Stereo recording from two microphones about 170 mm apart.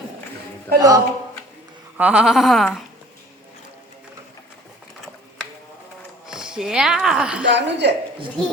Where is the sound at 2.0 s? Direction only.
5° right (ahead or behind).